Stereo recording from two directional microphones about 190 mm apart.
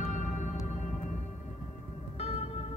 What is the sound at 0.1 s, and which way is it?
Music, 40° left (ahead or behind).